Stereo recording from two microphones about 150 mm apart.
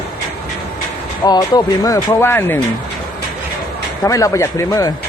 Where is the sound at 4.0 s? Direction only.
20° left (ahead or behind).